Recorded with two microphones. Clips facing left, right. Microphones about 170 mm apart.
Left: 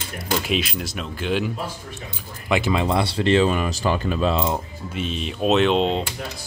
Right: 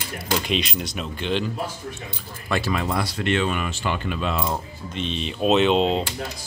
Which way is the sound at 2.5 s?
20° left (ahead or behind).